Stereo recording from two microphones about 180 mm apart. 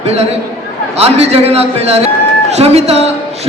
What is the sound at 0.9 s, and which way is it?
A man's voice, 35° right (ahead or behind).